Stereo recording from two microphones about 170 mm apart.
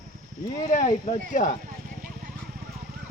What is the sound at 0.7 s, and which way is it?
Speech, 45° left (ahead or behind).